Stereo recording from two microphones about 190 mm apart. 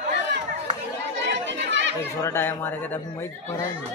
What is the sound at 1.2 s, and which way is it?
Chatter, 70° right (ahead or behind).